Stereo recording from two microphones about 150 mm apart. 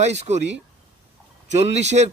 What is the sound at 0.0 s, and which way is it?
Speech, 50° right (ahead or behind).